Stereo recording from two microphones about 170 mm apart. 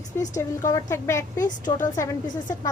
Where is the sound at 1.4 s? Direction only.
50° left (ahead or behind).